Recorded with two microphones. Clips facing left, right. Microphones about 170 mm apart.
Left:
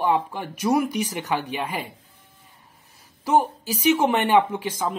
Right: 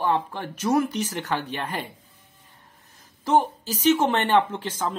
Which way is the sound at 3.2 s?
10° left (ahead or behind).